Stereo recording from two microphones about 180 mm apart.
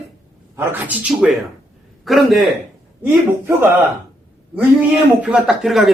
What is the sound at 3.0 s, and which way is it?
Speech, 10° right (ahead or behind).